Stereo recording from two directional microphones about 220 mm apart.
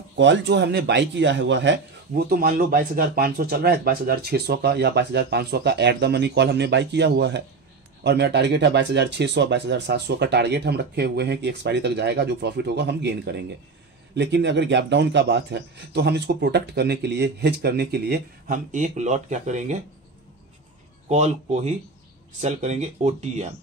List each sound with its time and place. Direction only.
0.2 s speech: 55° right (ahead or behind); by 19.8 s 35° right (ahead or behind)
21.1 s speech: 30° right (ahead or behind)